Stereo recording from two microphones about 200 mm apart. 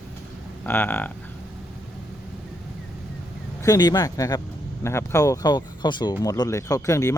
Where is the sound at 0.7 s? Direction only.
10° left (ahead or behind).